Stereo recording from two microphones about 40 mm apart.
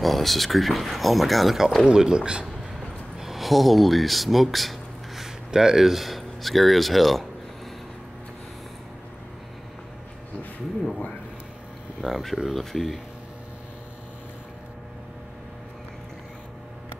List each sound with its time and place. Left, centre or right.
0.0 s speech: centre
1.9 s speech: centre
3.2 s a sound: centre
5.5 s speech: centre
12.0 s speech: centre